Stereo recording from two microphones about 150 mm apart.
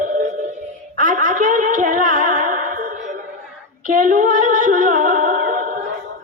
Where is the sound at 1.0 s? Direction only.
65° right (ahead or behind).